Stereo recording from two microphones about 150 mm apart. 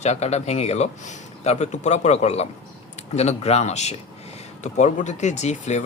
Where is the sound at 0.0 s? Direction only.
45° left (ahead or behind).